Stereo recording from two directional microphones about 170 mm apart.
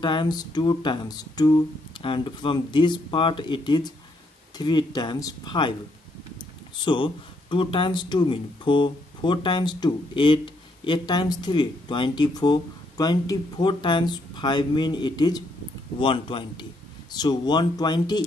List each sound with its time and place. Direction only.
0.0 s speech: 25° left (ahead or behind)
6.8 s speech: 30° left (ahead or behind)